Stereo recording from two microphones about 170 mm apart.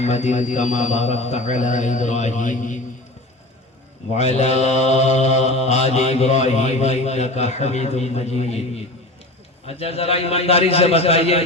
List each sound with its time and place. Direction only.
0.0 s a man's voice: 40° left (ahead or behind)
4.1 s mantra: 40° left (ahead or behind)